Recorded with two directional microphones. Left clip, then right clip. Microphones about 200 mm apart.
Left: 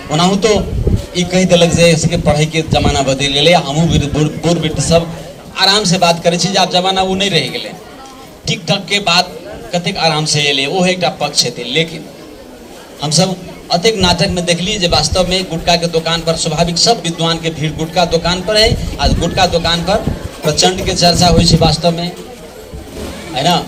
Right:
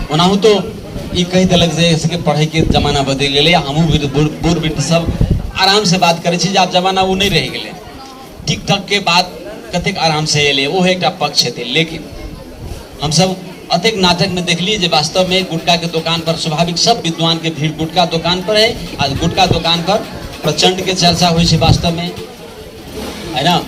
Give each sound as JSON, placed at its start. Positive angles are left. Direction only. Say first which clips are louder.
{"t": 0.1, "sound": "a man's voice", "louder": "right 1 dB", "side_deg": 15}
{"t": 13.0, "sound": "a man's voice", "louder": "even", "side_deg": 10}
{"t": 23.3, "sound": "a man's voice", "louder": "even", "side_deg": 15}